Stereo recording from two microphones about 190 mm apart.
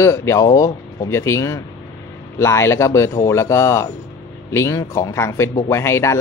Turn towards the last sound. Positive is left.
turn(degrees=15)  # may be behind; listen again after turning